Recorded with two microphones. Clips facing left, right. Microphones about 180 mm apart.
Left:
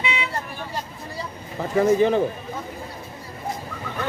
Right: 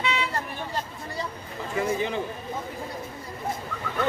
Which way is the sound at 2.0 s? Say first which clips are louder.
Left 9 dB; 40° left (ahead or behind).